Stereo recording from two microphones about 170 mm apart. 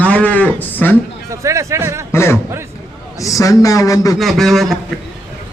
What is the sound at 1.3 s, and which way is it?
Speech, 15° right (ahead or behind).